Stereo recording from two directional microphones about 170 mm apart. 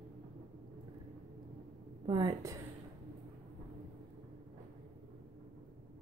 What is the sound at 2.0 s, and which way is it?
Speech, 25° right (ahead or behind).